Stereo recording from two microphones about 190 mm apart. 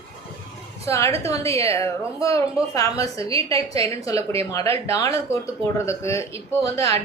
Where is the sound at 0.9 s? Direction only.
15° left (ahead or behind).